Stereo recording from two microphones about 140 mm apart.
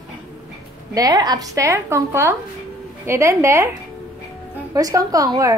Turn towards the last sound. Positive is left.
turn(degrees=-25)  # may be behind; listen again after turning